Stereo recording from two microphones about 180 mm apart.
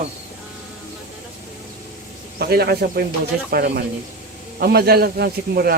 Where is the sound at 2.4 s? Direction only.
60° right (ahead or behind).